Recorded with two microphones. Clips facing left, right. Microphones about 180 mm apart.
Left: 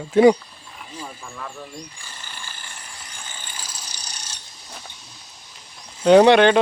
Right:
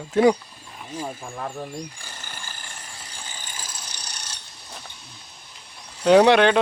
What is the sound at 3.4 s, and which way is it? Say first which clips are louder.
Ratchet: even; 55° right (ahead or behind).